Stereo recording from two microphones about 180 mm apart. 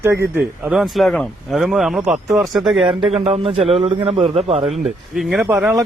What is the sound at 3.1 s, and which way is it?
A man's voice, 35° right (ahead or behind).